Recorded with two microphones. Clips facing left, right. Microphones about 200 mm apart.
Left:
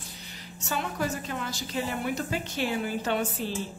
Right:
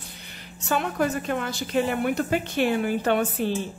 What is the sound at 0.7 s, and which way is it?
A woman's voice, 60° right (ahead or behind).